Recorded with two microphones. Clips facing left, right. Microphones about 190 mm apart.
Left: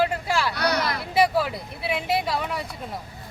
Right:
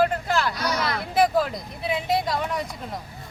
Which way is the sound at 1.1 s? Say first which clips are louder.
Even; 10° left (ahead or behind).